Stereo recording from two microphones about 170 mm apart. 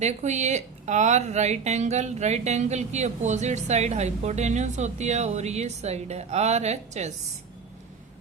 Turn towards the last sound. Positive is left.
turn(degrees=-40)  # may be behind; listen again after turning